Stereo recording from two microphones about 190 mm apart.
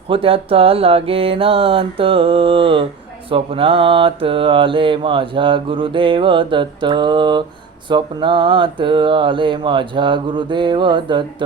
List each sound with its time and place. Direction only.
0.1 s mantra: 30° right (ahead or behind)